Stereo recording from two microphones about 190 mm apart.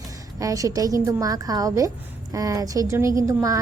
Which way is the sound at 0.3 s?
20° right (ahead or behind).